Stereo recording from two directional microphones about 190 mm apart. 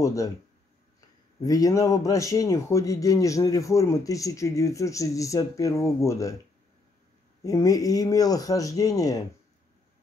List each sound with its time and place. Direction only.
0.0 s speech: 15° left (ahead or behind)
1.4 s speech: 20° left (ahead or behind)
7.4 s speech: 20° left (ahead or behind)